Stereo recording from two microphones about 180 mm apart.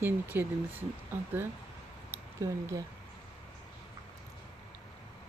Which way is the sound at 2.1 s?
15° right (ahead or behind).